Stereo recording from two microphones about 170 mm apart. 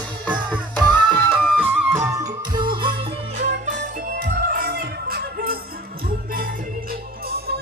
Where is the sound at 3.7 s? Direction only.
75° right (ahead or behind).